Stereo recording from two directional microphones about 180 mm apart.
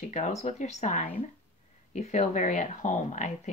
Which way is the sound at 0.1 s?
40° left (ahead or behind).